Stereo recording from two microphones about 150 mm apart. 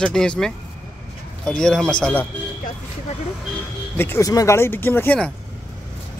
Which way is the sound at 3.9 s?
15° left (ahead or behind).